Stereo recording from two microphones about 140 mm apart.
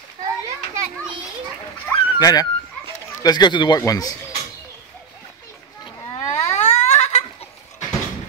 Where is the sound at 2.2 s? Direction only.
25° left (ahead or behind).